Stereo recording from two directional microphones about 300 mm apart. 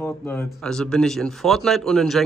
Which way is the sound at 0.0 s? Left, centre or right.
Centre.